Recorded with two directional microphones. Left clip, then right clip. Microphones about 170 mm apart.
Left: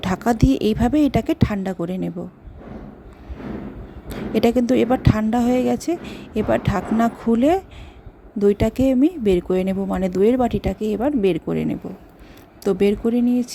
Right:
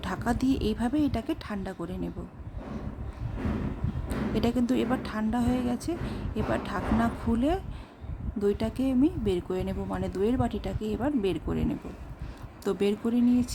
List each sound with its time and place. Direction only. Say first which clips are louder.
0.0 s speech: left 10 dB; 40° left (ahead or behind)
4.4 s speech: left 11 dB; 40° left (ahead or behind)